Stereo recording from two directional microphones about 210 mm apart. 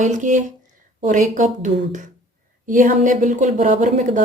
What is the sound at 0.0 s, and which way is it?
Speech, 35° right (ahead or behind).